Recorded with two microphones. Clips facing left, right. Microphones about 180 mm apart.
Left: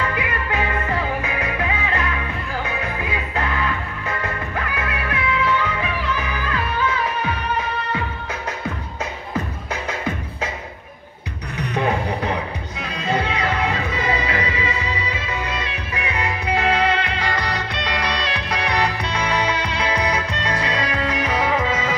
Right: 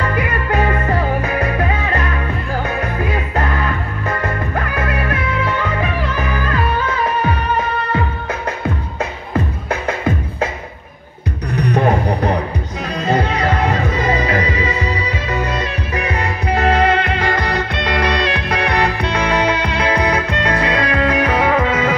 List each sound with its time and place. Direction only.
0.0 s music: 45° right (ahead or behind)
11.5 s music: 45° right (ahead or behind); by 21.9 s 60° right (ahead or behind)